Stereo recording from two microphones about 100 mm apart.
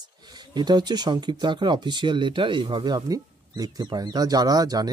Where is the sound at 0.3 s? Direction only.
45° right (ahead or behind).